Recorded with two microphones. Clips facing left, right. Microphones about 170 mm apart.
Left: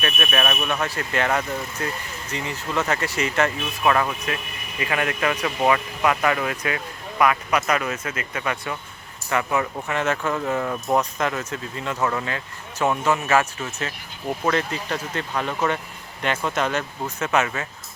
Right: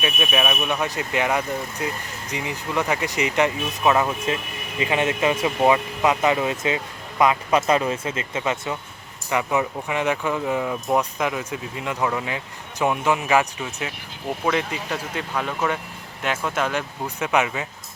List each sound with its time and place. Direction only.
0.0 s speech: 10° right (ahead or behind)